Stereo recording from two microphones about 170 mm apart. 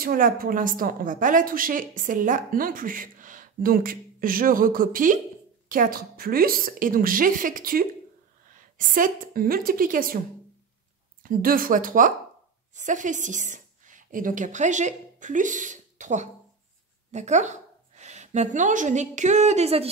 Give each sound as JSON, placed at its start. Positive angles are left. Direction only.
{"t": 0.0, "sound": "a woman's voice", "side_deg": -55}
{"t": 11.2, "sound": "a woman's voice", "side_deg": -55}